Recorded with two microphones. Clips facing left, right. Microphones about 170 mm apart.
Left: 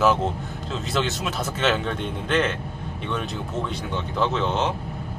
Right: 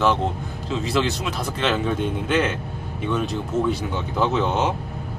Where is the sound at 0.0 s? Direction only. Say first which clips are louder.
Even; 5° left (ahead or behind).